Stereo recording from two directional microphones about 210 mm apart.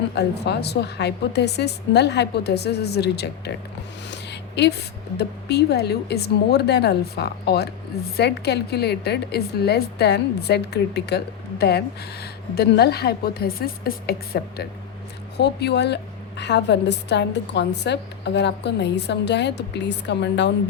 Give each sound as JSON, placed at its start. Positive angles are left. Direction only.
{"t": 0.1, "sound": "a woman's voice", "side_deg": 50}